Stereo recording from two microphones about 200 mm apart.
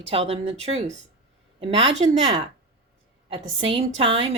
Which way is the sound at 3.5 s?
25° right (ahead or behind).